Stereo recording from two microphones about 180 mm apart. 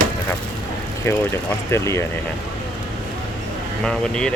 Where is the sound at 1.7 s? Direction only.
15° left (ahead or behind).